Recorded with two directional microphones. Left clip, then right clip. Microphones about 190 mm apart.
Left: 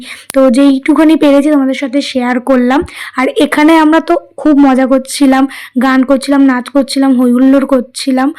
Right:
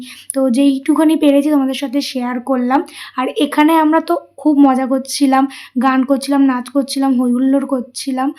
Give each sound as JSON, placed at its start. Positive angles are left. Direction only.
{"t": 0.3, "sound": "speech", "side_deg": 25}